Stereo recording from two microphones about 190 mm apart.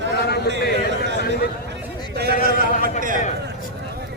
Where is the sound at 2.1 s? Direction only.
55° right (ahead or behind).